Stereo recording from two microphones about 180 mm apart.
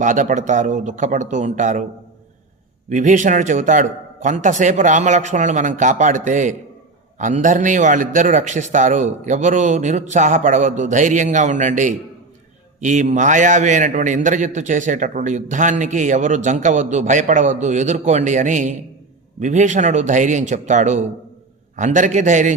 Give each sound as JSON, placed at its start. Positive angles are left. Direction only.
{"t": 0.0, "sound": "a man's voice", "side_deg": -45}
{"t": 2.9, "sound": "a man's voice", "side_deg": -45}